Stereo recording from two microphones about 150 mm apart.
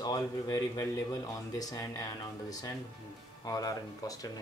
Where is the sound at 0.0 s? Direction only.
25° left (ahead or behind).